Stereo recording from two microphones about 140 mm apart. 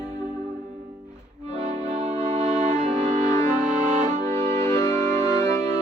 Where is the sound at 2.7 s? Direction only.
20° left (ahead or behind).